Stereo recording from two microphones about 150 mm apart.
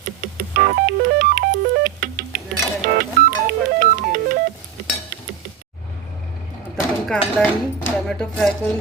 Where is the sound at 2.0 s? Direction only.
70° right (ahead or behind).